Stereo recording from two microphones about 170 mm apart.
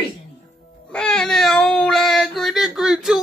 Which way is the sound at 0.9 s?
5° left (ahead or behind).